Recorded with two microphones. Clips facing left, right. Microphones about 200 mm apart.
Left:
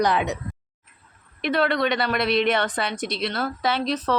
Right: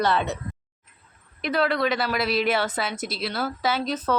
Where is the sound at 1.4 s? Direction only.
Centre (ahead or behind).